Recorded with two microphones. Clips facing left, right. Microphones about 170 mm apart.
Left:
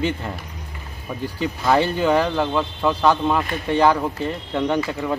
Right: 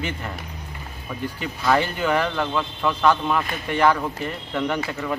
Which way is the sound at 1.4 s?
25° left (ahead or behind).